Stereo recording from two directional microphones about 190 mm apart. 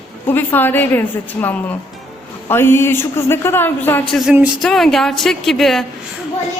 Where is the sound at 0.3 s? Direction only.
10° left (ahead or behind).